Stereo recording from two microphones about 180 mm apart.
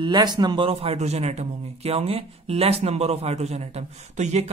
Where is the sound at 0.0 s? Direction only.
25° right (ahead or behind).